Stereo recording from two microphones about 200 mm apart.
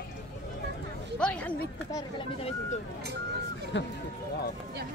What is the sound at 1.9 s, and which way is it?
Speech, 25° left (ahead or behind).